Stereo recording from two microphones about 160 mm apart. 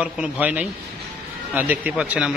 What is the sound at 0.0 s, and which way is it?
Speech, 10° right (ahead or behind).